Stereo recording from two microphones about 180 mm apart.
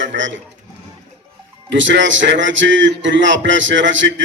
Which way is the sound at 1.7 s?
90° right.